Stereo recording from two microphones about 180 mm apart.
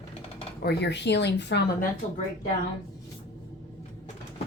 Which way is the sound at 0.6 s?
70° left (ahead or behind).